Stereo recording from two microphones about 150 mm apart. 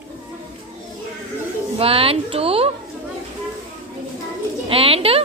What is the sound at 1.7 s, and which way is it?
Speech, 40° right (ahead or behind).